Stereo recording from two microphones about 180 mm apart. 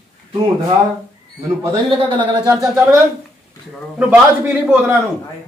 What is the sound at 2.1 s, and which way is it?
Speech, 15° right (ahead or behind).